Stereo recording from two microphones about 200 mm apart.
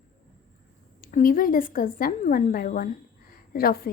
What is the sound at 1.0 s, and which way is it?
A woman's voice, 45° left (ahead or behind).